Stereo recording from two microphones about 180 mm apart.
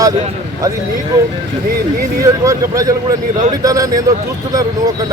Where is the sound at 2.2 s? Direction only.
20° right (ahead or behind).